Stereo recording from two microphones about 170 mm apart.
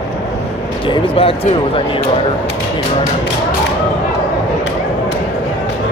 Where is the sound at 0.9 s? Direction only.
35° left (ahead or behind).